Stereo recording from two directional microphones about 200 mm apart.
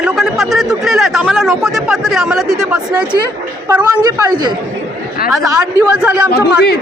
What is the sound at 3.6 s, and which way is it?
A woman's voice, 15° right (ahead or behind).